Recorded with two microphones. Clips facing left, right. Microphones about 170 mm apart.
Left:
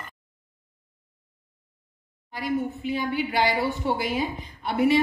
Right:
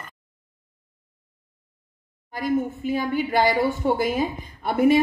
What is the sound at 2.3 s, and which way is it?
A woman's voice, 45° right (ahead or behind).